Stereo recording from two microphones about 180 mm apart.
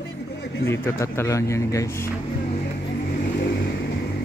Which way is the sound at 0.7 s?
15° left (ahead or behind).